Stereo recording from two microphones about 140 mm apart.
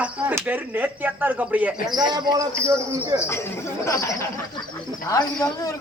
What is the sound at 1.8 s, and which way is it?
Speech, 30° right (ahead or behind).